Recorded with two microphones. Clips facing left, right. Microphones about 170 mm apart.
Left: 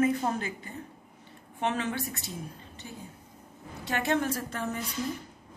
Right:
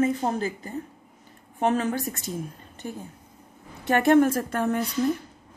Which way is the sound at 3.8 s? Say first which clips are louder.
Right 10 dB; 55° right (ahead or behind).